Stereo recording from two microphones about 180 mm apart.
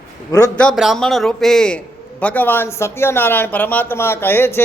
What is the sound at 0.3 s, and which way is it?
Speech, 20° left (ahead or behind).